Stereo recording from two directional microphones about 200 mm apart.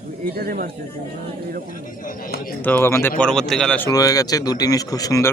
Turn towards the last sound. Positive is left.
turn(degrees=15)  # may be behind; listen again after turning